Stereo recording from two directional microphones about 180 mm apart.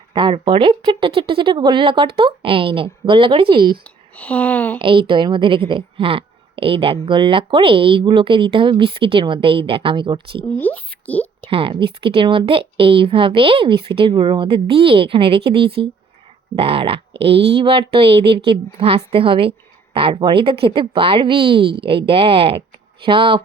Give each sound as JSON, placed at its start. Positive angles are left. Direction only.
{"t": 0.1, "sound": "a woman's voice", "side_deg": -25}
{"t": 4.2, "sound": "speech", "side_deg": 10}
{"t": 4.8, "sound": "a woman's voice", "side_deg": -30}
{"t": 10.6, "sound": "speech", "side_deg": 10}
{"t": 11.4, "sound": "a woman's voice", "side_deg": -30}